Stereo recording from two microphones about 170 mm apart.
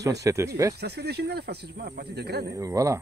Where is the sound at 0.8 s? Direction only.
70° right (ahead or behind).